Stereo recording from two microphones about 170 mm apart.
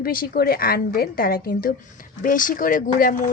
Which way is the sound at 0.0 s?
60° left (ahead or behind).